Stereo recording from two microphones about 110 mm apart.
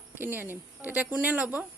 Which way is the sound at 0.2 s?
20° right (ahead or behind).